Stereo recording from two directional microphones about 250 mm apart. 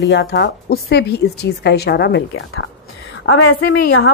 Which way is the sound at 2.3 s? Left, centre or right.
Left.